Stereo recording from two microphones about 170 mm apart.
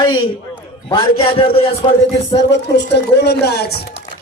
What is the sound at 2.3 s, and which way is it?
Speech, 90° left.